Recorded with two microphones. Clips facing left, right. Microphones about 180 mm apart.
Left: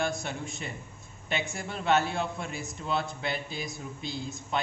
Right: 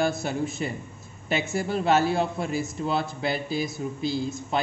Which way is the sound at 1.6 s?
40° right (ahead or behind).